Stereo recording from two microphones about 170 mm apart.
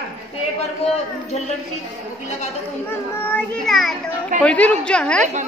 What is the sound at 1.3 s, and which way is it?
Speech, 40° left (ahead or behind).